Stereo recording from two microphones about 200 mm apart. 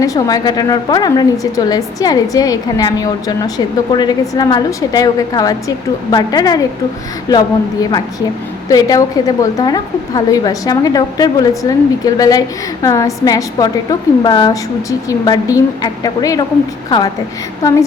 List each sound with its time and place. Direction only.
0.0 s a woman's voice: 15° left (ahead or behind)
17.6 s a woman's voice: 15° left (ahead or behind)